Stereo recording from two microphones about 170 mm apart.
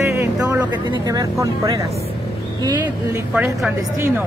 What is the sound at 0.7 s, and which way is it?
Speech, 25° right (ahead or behind).